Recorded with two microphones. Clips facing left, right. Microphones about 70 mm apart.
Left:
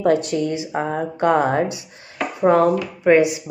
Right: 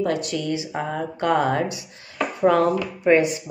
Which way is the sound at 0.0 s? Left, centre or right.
Left.